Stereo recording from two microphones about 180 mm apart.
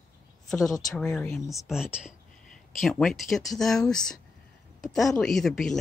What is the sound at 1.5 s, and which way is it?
Speech, centre (ahead or behind).